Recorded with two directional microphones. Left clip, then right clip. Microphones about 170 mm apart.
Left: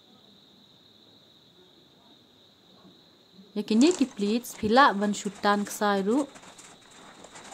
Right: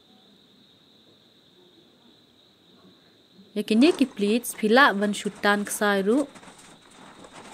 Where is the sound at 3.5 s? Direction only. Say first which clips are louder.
Right 3 dB; 5° right (ahead or behind).